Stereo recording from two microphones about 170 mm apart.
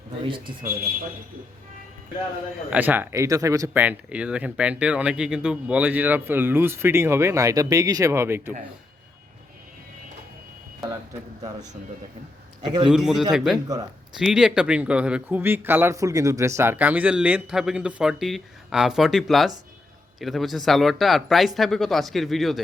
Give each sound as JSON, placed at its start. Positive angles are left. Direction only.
{"t": 0.3, "sound": "a man's voice", "side_deg": -30}
{"t": 2.6, "sound": "speech", "side_deg": -10}
{"t": 12.6, "sound": "a man's voice", "side_deg": -25}
{"t": 12.9, "sound": "speech", "side_deg": 0}